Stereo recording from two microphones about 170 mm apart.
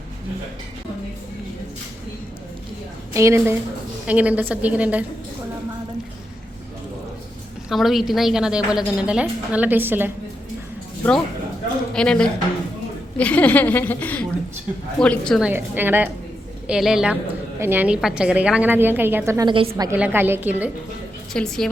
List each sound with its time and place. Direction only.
3.1 s a woman's voice: 15° right (ahead or behind)
7.7 s a woman's voice: centre (ahead or behind)
11.9 s a woman's voice: 5° left (ahead or behind)
15.4 s a woman's voice: 10° right (ahead or behind)
19.5 s a woman's voice: 30° right (ahead or behind)
19.7 s a woman's voice: 15° right (ahead or behind)
21.3 s a woman's voice: 5° left (ahead or behind)